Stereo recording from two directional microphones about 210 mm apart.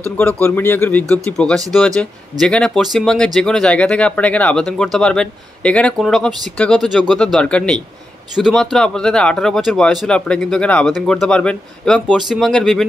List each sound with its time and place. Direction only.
0.4 s a man's voice: 10° left (ahead or behind)